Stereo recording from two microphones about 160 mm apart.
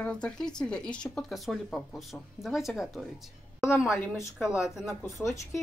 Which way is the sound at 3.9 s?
15° left (ahead or behind).